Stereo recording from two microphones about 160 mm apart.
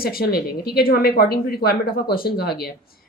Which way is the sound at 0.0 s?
70° left (ahead or behind).